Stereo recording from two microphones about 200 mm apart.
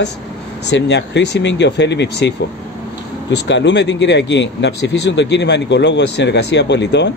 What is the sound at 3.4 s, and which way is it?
Speech, 60° left (ahead or behind).